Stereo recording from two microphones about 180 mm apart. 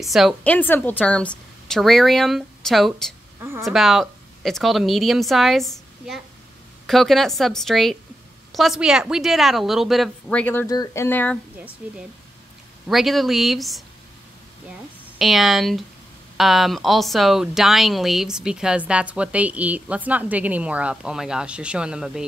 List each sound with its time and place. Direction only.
0.0 s speech: centre (ahead or behind)
3.3 s a sound: 15° right (ahead or behind)
3.6 s speech: centre (ahead or behind)
11.8 s speech: 5° right (ahead or behind)
15.1 s speech: centre (ahead or behind)